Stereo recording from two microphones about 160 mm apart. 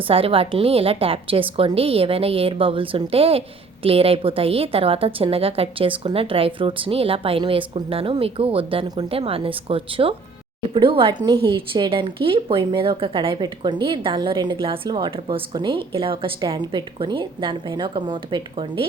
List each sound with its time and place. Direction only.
0.1 s a woman's voice: 35° right (ahead or behind)